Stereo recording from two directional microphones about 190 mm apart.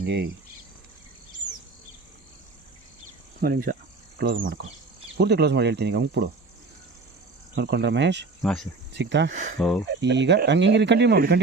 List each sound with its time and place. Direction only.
0.0 s speech: 60° right (ahead or behind)
3.4 s speech: 50° right (ahead or behind)
7.5 s speech: 60° right (ahead or behind)
8.4 s speech: centre (ahead or behind)
8.9 s speech: 65° right (ahead or behind)
9.3 s speech: 40° right (ahead or behind)
9.6 s speech: 5° left (ahead or behind)
10.0 s speech: 65° right (ahead or behind)